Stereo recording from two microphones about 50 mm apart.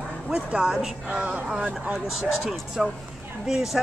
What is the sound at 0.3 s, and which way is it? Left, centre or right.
Speech, centre.